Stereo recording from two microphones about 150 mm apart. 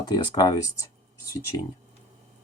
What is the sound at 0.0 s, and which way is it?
Speech, 25° left (ahead or behind).